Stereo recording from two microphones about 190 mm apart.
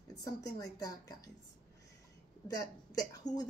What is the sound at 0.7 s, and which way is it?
Speech, 20° left (ahead or behind).